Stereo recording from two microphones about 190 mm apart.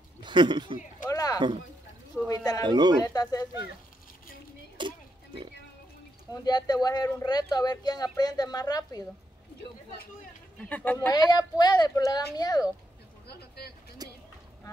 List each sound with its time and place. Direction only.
0.2 s speech: 25° right (ahead or behind)
1.1 s a sound: 20° left (ahead or behind)
2.2 s speech: 20° left (ahead or behind)
2.6 s speech: 20° right (ahead or behind)
3.0 s speech: 20° left (ahead or behind)
4.8 s speech: 25° right (ahead or behind)
6.3 s speech: 20° left (ahead or behind)
10.6 s speech: 10° left (ahead or behind)
13.3 s speech: 55° left (ahead or behind)
14.0 s a sound: 20° right (ahead or behind)